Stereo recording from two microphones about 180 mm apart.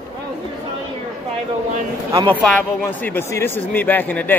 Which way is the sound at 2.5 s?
10° left (ahead or behind).